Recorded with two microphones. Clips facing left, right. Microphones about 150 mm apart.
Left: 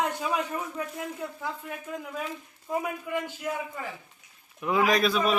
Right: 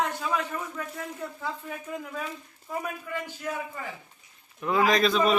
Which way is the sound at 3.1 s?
15° left (ahead or behind).